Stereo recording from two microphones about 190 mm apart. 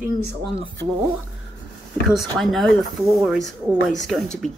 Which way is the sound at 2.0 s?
Centre (ahead or behind).